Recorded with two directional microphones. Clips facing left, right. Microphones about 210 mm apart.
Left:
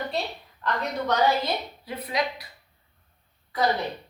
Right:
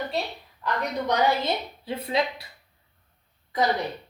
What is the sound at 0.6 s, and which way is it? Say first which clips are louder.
Speech: even; 15° right (ahead or behind).